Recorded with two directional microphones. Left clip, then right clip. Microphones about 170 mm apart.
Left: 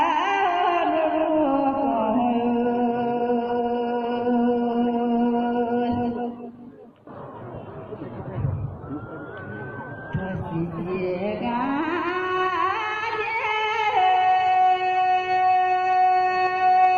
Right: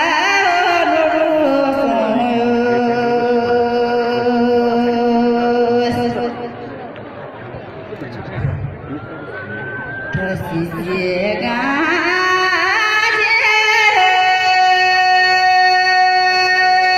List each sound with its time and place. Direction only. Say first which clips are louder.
0.0 s music: right 7 dB; 25° right (ahead or behind)
10.9 s carnatic music: right 9 dB; 25° right (ahead or behind)